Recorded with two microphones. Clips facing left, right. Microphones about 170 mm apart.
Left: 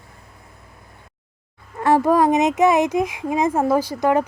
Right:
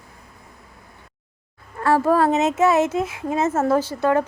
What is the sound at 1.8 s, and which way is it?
Speech, 15° left (ahead or behind).